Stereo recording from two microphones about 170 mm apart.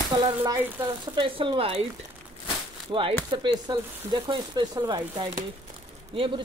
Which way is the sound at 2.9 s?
30° right (ahead or behind).